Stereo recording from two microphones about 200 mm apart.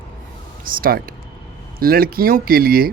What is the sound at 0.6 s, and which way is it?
Speech, 45° right (ahead or behind).